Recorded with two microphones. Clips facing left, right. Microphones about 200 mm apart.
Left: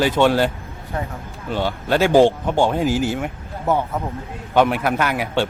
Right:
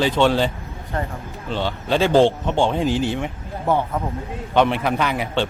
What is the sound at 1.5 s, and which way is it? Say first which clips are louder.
A man's voice: left 1 dB; 10° left (ahead or behind).